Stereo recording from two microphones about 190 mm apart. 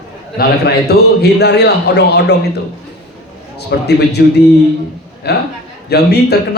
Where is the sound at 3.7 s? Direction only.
60° left (ahead or behind).